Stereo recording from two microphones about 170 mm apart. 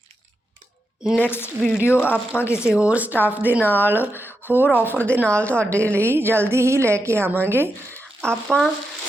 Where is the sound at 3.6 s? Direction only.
10° left (ahead or behind).